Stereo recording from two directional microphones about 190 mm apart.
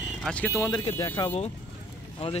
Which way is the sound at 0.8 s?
30° left (ahead or behind).